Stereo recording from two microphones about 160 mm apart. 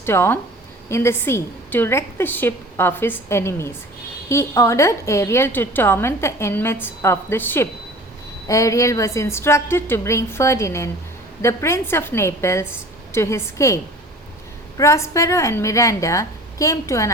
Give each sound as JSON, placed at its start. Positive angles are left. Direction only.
{"t": 0.0, "sound": "a woman's voice", "side_deg": 15}
{"t": 14.8, "sound": "a woman's voice", "side_deg": 20}